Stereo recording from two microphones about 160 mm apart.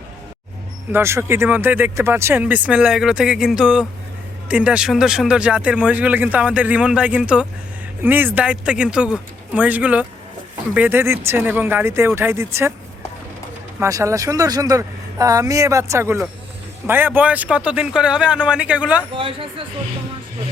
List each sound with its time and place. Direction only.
0.9 s speech: 15° right (ahead or behind)
13.7 s speech: 15° right (ahead or behind)
19.1 s speech: 35° right (ahead or behind)